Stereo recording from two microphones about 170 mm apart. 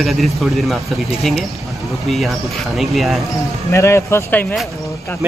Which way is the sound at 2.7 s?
Centre (ahead or behind).